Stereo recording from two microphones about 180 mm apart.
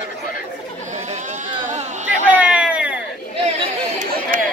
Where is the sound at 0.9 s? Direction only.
40° right (ahead or behind).